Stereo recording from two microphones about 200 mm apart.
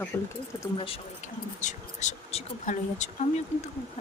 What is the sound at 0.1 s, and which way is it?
Speech, 10° left (ahead or behind).